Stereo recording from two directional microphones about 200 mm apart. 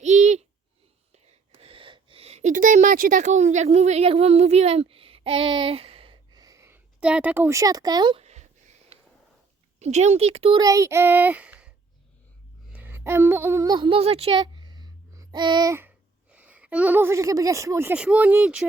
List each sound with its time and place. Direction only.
0.0 s a sound: 35° right (ahead or behind)
9.8 s speech: 35° right (ahead or behind); by 11.7 s 5° right (ahead or behind)
12.7 s speech: 10° right (ahead or behind)